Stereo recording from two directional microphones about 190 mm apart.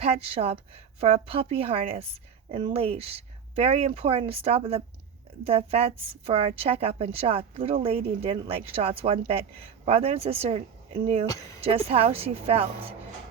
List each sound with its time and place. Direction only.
0.0 s speech: 30° right (ahead or behind)